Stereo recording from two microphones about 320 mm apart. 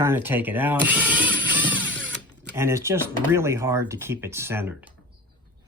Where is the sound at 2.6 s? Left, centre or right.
Centre.